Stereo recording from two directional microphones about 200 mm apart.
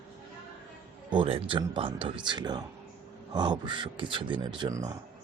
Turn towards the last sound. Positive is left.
turn(degrees=-20)  # may be behind; listen again after turning